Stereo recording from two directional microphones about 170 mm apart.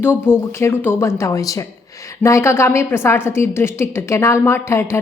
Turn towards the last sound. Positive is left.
turn(degrees=15)  # may be behind; listen again after turning